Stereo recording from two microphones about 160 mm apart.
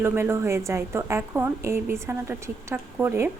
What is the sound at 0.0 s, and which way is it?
A woman's voice, 15° right (ahead or behind).